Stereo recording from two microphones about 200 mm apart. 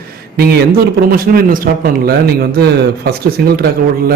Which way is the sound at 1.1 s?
45° right (ahead or behind).